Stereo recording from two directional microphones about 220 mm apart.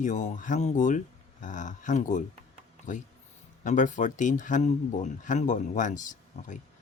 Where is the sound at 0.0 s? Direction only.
35° left (ahead or behind).